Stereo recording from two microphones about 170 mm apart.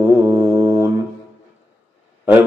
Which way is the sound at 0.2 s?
20° right (ahead or behind).